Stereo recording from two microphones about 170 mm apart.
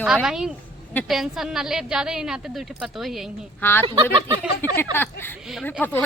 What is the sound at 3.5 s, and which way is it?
Speech, 10° left (ahead or behind).